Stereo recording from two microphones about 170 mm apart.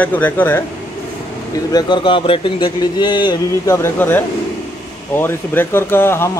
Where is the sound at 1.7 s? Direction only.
25° left (ahead or behind).